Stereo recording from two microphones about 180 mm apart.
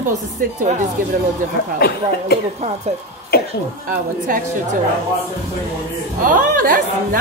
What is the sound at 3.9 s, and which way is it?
Speech, 50° right (ahead or behind).